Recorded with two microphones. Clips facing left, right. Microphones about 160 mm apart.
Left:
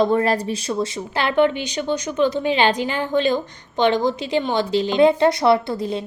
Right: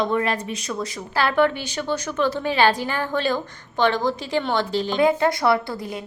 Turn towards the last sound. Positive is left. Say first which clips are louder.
# left 4 dB
turn(degrees=25)  # may be behind; listen again after turning